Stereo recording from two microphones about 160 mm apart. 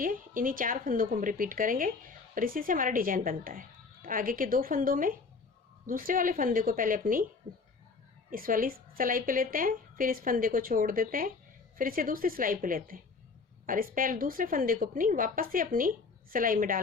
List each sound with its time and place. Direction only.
0.0 s a woman's voice: 60° right (ahead or behind)
8.3 s a woman's voice: 60° right (ahead or behind)